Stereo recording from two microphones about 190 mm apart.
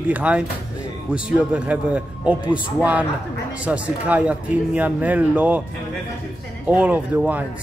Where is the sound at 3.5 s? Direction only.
5° right (ahead or behind).